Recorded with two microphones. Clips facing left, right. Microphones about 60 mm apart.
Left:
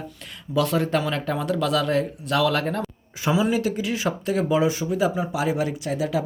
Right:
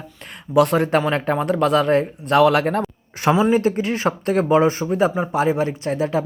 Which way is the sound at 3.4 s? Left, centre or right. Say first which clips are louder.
Right 5 dB; right.